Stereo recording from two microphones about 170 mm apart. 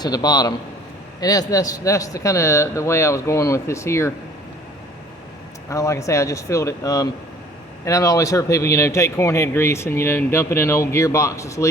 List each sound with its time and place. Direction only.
0.0 s a man's voice: 25° left (ahead or behind)
5.6 s a man's voice: 20° left (ahead or behind)